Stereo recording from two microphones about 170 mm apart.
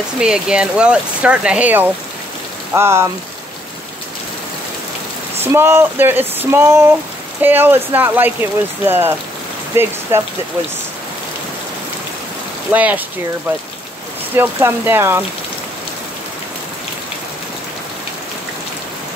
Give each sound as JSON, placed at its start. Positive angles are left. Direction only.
{"t": 0.2, "sound": "speech", "side_deg": -5}
{"t": 5.4, "sound": "speech", "side_deg": -15}
{"t": 12.7, "sound": "speech", "side_deg": -10}
{"t": 14.3, "sound": "speech", "side_deg": -10}